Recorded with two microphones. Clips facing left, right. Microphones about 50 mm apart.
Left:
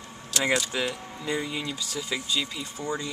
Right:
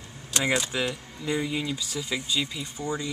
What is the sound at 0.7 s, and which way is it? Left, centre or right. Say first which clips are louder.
Speech: even; centre.